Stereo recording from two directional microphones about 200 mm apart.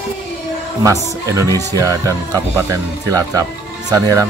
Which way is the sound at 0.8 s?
15° right (ahead or behind).